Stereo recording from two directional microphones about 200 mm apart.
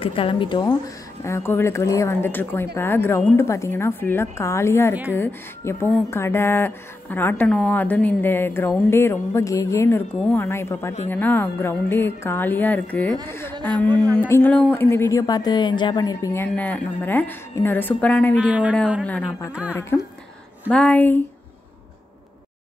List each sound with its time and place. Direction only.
0.0 s speech: 25° left (ahead or behind); by 18.3 s 10° left (ahead or behind)
18.3 s speech: 5° right (ahead or behind)
19.0 s speech: 5° left (ahead or behind)